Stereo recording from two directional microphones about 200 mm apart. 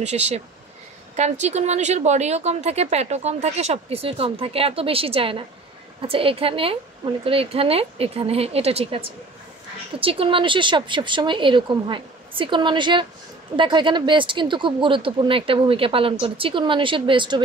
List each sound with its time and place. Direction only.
0.0 s speech: 35° right (ahead or behind)